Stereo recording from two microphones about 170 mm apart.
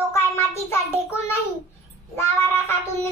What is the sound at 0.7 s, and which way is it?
Child singing, 15° left (ahead or behind).